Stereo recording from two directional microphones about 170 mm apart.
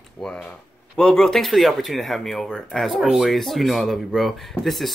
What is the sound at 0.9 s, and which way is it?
Speech, 5° left (ahead or behind).